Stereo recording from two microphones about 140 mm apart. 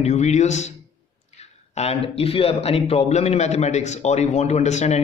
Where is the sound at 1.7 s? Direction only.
50° left (ahead or behind).